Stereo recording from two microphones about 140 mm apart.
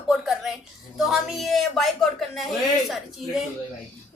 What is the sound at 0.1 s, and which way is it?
A woman's voice, centre (ahead or behind).